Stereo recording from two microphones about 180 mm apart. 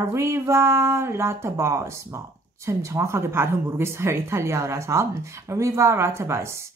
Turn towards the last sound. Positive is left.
turn(degrees=-15)  # may be behind; listen again after turning